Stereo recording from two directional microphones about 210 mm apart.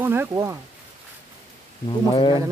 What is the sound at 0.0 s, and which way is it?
Speech, 10° right (ahead or behind).